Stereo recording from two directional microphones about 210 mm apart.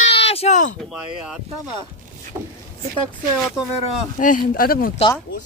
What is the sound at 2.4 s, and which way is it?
Vehicle, 10° right (ahead or behind).